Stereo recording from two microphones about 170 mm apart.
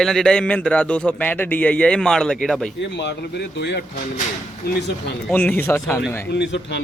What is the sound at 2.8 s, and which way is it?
Speech, 90° left.